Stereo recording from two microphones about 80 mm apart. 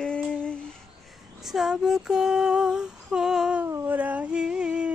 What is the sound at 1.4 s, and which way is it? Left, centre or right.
Female singing, centre.